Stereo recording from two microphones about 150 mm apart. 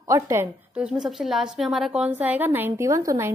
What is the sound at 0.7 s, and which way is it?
A woman's voice, 5° right (ahead or behind).